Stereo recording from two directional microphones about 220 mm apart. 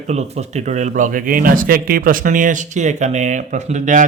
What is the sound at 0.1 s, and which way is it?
Speech, 30° right (ahead or behind).